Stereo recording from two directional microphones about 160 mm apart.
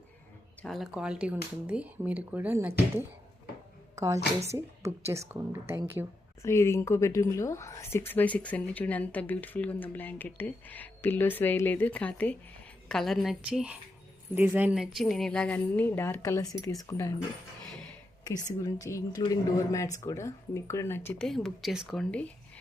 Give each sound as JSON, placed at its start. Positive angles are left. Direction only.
{"t": 0.6, "sound": "a woman's voice", "side_deg": 0}
{"t": 6.4, "sound": "a woman's voice", "side_deg": 15}
{"t": 18.6, "sound": "a woman's voice", "side_deg": 20}